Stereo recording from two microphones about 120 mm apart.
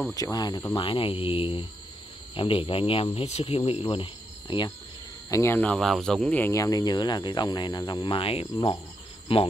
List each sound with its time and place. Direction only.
0.1 s speech: 30° left (ahead or behind)
0.7 s speech: 45° left (ahead or behind)
5.3 s speech: 20° left (ahead or behind)
5.8 s speech: centre (ahead or behind)
6.5 s speech: 30° left (ahead or behind); by 9.4 s 50° left (ahead or behind)